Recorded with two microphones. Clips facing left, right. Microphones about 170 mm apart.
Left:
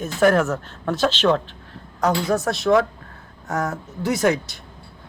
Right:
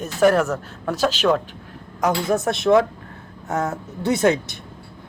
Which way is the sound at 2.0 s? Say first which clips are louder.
Even; 20° right (ahead or behind).